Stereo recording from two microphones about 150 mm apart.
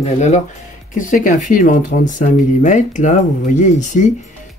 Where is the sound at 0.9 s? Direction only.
60° left (ahead or behind).